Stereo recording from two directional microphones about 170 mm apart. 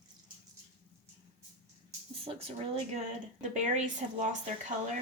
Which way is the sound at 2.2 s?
35° right (ahead or behind).